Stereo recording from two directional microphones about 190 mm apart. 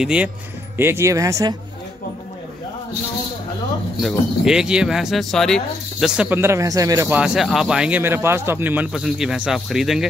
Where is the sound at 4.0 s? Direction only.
Centre (ahead or behind); by 7.1 s 20° right (ahead or behind).